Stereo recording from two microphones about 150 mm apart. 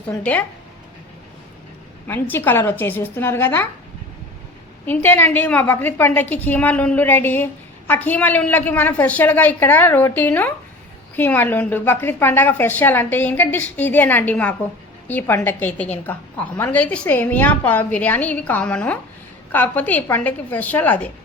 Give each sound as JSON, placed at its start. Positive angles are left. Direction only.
{"t": 0.2, "sound": "a woman's voice", "side_deg": 10}
{"t": 2.0, "sound": "a woman's voice", "side_deg": 15}
{"t": 4.9, "sound": "a woman's voice", "side_deg": 10}